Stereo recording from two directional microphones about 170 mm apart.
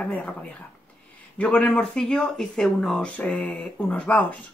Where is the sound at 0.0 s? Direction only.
5° left (ahead or behind).